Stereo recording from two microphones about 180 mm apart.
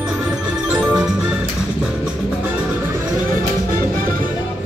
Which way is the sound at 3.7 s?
50° right (ahead or behind).